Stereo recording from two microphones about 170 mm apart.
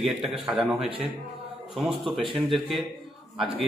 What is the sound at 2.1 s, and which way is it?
Speech, centre (ahead or behind).